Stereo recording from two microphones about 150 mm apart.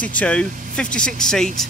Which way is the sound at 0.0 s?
10° left (ahead or behind).